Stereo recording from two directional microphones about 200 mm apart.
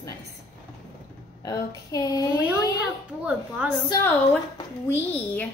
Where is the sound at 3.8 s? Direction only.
20° left (ahead or behind).